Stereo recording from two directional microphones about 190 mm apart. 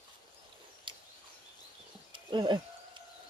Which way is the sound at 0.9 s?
25° right (ahead or behind).